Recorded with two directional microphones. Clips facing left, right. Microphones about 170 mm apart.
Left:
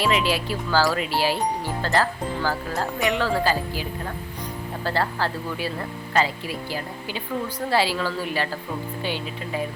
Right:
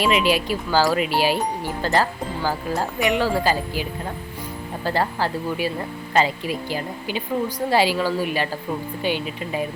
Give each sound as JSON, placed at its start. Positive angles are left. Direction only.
{"t": 0.0, "sound": "speech", "side_deg": -15}